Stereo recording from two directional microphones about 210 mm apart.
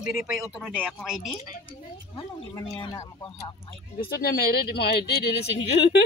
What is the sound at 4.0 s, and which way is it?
Speech, 45° left (ahead or behind).